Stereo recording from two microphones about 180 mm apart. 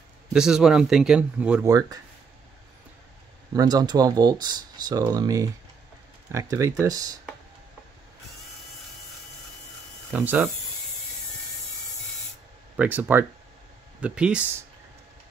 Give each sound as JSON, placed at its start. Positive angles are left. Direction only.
{"t": 0.3, "sound": "a man's voice", "side_deg": -5}
{"t": 1.6, "sound": "speech", "side_deg": -20}
{"t": 3.5, "sound": "speech", "side_deg": -20}
{"t": 6.5, "sound": "speech", "side_deg": -15}
{"t": 10.1, "sound": "speech", "side_deg": -5}
{"t": 12.7, "sound": "speech", "side_deg": -10}